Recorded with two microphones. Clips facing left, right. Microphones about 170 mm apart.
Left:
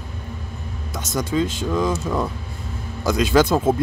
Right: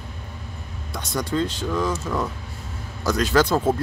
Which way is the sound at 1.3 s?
10° left (ahead or behind).